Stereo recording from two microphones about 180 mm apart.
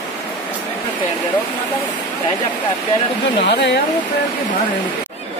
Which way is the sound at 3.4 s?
70° left (ahead or behind).